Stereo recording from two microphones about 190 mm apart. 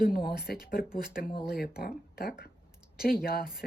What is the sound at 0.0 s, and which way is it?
Speech, 55° left (ahead or behind).